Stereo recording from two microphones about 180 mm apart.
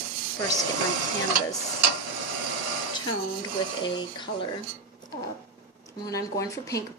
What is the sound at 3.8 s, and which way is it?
Speech, 25° left (ahead or behind).